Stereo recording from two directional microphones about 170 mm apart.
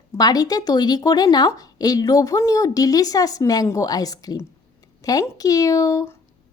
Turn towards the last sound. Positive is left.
turn(degrees=15)  # may be behind; listen again after turning